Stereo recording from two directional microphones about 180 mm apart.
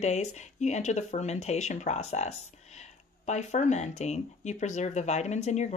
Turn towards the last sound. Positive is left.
turn(degrees=40)  # may be behind; listen again after turning